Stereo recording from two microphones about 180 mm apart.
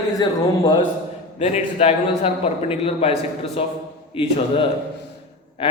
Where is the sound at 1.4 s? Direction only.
35° left (ahead or behind).